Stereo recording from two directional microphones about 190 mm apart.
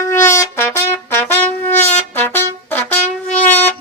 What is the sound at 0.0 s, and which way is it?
Trumpet, 15° left (ahead or behind).